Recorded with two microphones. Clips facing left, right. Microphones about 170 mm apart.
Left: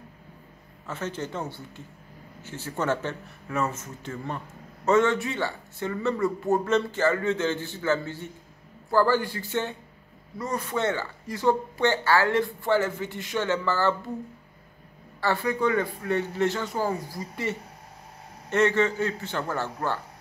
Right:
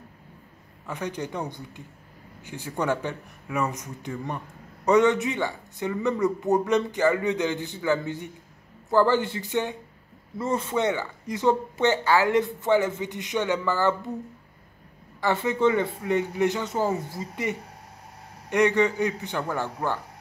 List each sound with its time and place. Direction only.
0.8 s speech: 15° right (ahead or behind)
15.1 s speech: 20° right (ahead or behind)